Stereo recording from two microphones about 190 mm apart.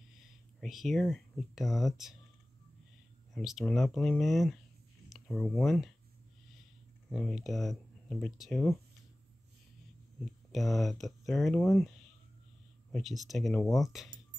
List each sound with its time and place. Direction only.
0.2 s speech: centre (ahead or behind)
3.3 s speech: centre (ahead or behind)
7.1 s speech: centre (ahead or behind)
10.2 s speech: centre (ahead or behind)
12.9 s speech: centre (ahead or behind)